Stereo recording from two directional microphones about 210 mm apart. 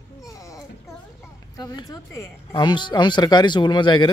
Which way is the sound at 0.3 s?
15° left (ahead or behind).